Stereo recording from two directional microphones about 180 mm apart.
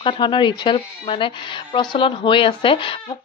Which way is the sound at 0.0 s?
25° left (ahead or behind).